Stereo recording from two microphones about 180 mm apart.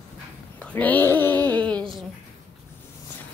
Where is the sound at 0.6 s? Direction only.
10° left (ahead or behind).